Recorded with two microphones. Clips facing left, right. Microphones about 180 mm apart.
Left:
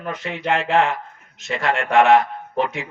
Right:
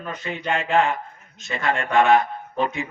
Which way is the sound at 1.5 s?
70° left (ahead or behind).